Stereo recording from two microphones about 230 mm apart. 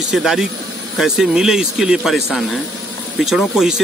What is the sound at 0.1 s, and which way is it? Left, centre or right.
Speech, centre.